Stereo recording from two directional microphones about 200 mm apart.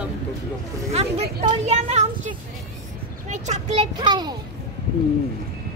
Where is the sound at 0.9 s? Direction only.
30° right (ahead or behind).